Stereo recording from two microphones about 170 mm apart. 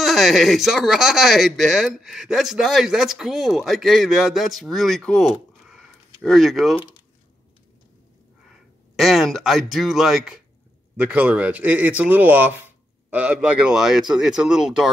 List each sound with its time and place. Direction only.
0.0 s speech: centre (ahead or behind)
8.9 s a man's voice: centre (ahead or behind)